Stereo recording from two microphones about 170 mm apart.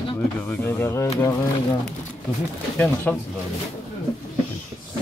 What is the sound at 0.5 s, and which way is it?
Speech, 10° left (ahead or behind).